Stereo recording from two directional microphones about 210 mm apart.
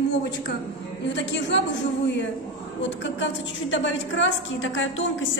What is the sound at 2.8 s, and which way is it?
A woman's voice, 60° left (ahead or behind).